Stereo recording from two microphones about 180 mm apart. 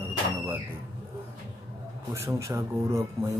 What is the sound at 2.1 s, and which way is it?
Speech, 15° right (ahead or behind).